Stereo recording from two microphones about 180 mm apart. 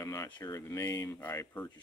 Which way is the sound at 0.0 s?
15° left (ahead or behind).